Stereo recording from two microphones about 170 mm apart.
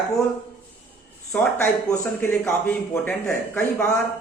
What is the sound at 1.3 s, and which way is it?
A man's voice, 5° left (ahead or behind).